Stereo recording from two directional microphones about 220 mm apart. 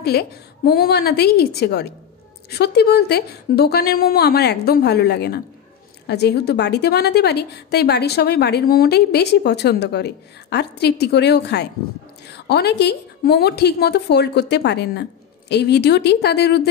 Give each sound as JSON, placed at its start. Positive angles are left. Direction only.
{"t": 0.0, "sound": "a woman's voice", "side_deg": 45}